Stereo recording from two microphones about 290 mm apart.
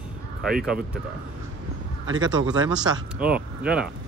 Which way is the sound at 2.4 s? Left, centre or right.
Centre.